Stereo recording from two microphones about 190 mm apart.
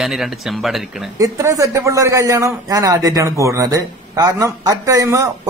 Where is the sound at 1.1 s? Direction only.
15° right (ahead or behind).